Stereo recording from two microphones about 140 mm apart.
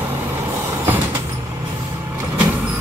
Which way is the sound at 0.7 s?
20° right (ahead or behind).